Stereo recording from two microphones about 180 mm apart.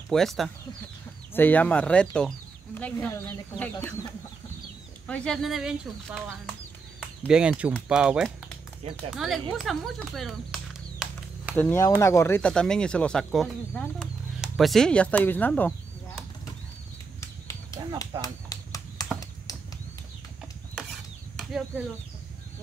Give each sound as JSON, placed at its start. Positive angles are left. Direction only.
{"t": 0.1, "sound": "speech", "side_deg": 0}
{"t": 7.2, "sound": "speech", "side_deg": -5}
{"t": 11.5, "sound": "speech", "side_deg": 10}
{"t": 17.2, "sound": "a sound", "side_deg": 15}
{"t": 21.4, "sound": "speech", "side_deg": 0}